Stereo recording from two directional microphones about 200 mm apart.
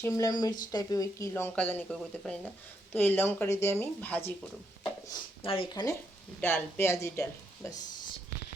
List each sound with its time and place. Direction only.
0.0 s speech: 15° left (ahead or behind)
5.0 s speech: 25° left (ahead or behind)